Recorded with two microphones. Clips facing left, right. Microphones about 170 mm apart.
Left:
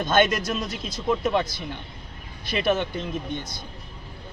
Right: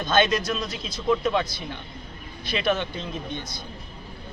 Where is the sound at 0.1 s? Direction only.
50° left (ahead or behind).